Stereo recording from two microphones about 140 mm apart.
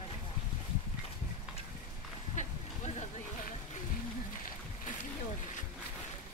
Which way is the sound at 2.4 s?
55° left (ahead or behind).